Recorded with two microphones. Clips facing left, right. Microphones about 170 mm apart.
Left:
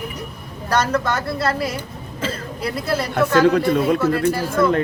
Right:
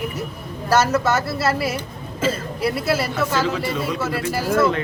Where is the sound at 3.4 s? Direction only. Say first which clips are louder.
Left 8 dB; 55° left (ahead or behind).